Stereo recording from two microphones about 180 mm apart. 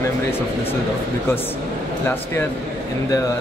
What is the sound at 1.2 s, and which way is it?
Speech, 10° left (ahead or behind).